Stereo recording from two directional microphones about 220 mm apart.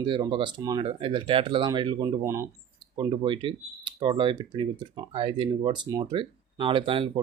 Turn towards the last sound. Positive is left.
turn(degrees=-25)  # may be behind; listen again after turning